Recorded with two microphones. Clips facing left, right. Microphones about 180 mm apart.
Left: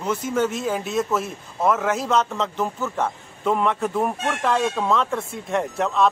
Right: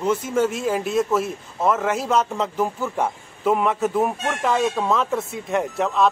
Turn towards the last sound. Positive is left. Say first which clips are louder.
# right 1 dB
turn(degrees=0)  # may be behind; listen again after turning